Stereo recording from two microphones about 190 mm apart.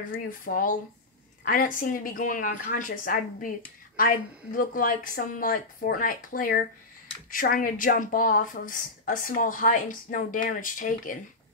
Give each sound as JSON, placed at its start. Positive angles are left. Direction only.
{"t": 0.5, "sound": "speech", "side_deg": 45}